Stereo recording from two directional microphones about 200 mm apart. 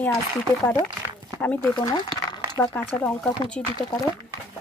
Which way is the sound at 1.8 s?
20° left (ahead or behind).